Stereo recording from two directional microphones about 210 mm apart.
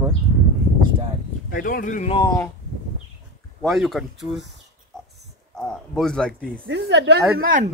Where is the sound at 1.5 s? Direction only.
40° left (ahead or behind).